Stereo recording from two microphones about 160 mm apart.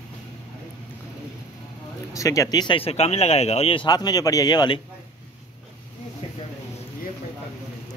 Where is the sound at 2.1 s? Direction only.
20° left (ahead or behind).